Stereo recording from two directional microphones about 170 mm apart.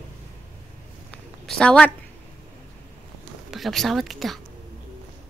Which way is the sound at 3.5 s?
Centre (ahead or behind).